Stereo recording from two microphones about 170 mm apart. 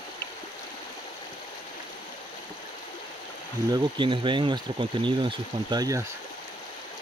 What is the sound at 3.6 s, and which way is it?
Speech, 25° right (ahead or behind).